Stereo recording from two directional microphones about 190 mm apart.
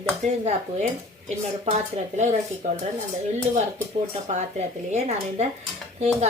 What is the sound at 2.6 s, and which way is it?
Speech, 40° right (ahead or behind).